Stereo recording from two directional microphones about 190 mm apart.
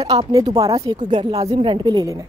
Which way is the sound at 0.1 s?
20° right (ahead or behind).